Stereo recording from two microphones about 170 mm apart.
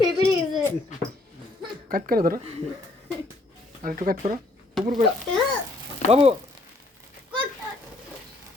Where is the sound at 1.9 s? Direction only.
60° right (ahead or behind).